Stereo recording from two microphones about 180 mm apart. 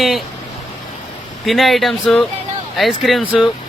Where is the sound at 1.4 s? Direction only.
Centre (ahead or behind).